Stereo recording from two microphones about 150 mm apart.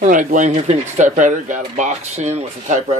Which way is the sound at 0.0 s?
60° right (ahead or behind).